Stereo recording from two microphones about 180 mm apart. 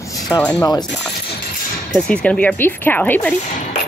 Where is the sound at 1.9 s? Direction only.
5° left (ahead or behind).